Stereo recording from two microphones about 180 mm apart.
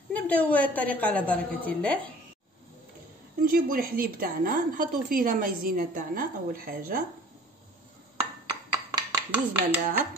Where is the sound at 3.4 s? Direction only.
55° right (ahead or behind).